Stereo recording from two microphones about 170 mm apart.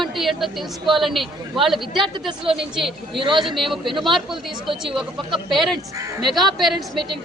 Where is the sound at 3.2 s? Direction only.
30° right (ahead or behind).